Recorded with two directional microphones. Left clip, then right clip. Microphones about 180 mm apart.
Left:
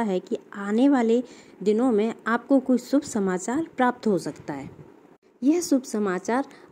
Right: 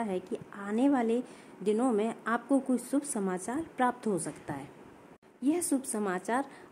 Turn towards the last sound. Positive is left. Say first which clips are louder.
# left 6 dB
turn(degrees=20)  # may be behind; listen again after turning